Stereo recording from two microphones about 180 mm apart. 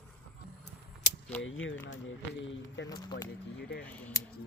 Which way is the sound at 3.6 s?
65° left (ahead or behind).